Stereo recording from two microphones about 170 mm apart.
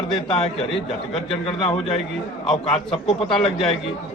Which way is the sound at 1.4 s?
30° left (ahead or behind).